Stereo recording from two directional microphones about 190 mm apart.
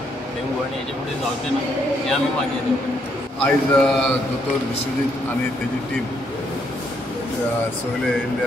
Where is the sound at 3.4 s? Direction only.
5° left (ahead or behind).